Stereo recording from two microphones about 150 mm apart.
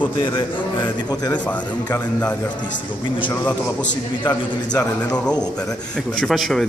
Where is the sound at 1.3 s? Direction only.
10° left (ahead or behind).